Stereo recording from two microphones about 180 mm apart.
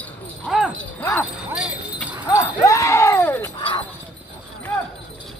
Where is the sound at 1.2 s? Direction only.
5° right (ahead or behind).